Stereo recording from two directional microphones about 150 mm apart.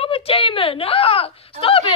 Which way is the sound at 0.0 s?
40° left (ahead or behind).